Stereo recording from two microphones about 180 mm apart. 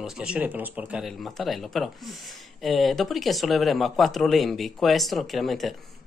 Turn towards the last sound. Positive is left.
turn(degrees=0)  # may be behind; listen again after turning